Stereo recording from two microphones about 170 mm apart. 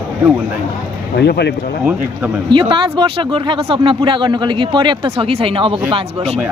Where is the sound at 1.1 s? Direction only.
75° left (ahead or behind).